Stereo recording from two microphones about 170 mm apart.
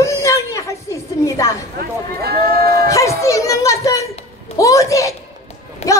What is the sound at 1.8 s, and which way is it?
A man's voice, 65° right (ahead or behind).